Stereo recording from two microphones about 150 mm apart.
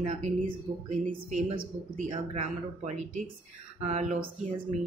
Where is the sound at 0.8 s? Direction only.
60° right (ahead or behind).